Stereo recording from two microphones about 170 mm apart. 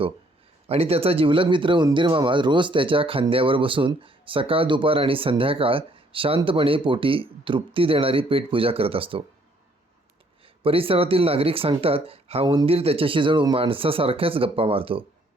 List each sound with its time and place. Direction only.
0.7 s speech: 35° right (ahead or behind)
10.4 s speech: 35° right (ahead or behind)